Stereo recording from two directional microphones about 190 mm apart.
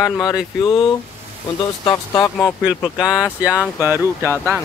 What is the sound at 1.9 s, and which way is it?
Speech, 20° left (ahead or behind).